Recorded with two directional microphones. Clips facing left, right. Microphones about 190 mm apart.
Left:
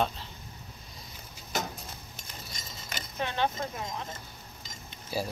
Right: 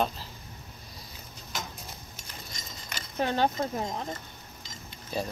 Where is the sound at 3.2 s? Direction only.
40° right (ahead or behind).